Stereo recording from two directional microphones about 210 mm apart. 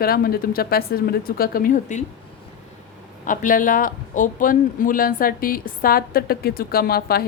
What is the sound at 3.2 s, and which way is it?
Speech, 40° left (ahead or behind).